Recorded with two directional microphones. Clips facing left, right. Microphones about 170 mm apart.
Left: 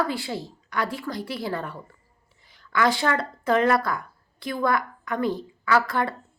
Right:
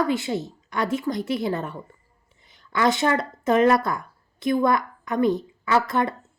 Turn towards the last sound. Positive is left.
turn(degrees=-20)  # may be behind; listen again after turning